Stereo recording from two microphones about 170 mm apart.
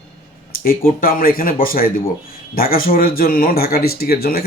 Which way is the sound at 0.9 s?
55° left (ahead or behind).